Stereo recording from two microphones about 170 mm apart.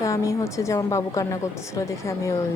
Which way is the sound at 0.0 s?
20° left (ahead or behind).